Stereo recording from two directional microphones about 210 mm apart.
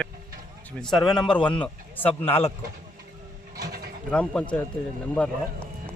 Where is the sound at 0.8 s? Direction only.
Centre (ahead or behind).